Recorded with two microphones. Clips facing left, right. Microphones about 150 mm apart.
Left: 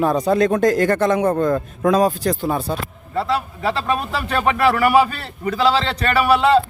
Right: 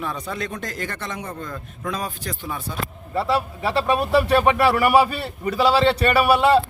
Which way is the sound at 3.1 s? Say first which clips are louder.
Left 1 dB; 5° right (ahead or behind).